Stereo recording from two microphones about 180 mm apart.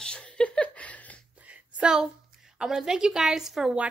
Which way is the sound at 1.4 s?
5° right (ahead or behind).